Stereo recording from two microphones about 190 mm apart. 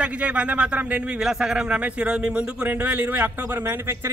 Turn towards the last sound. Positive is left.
turn(degrees=-15)  # may be behind; listen again after turning